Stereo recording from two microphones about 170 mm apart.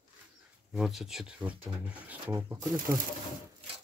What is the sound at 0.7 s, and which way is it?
Speech, centre (ahead or behind).